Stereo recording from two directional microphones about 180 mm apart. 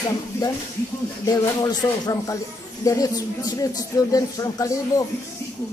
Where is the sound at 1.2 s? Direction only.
20° left (ahead or behind).